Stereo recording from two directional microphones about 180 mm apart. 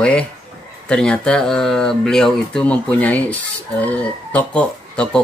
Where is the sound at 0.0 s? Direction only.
5° left (ahead or behind).